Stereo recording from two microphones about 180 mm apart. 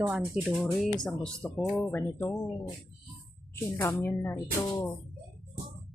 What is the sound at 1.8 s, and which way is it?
Speech, 15° left (ahead or behind).